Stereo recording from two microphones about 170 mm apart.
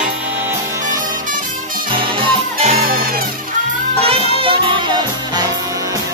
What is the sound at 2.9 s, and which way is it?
Music, 60° right (ahead or behind).